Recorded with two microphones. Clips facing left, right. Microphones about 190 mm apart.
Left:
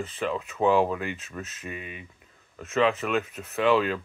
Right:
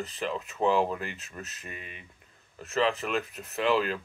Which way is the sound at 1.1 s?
40° right (ahead or behind).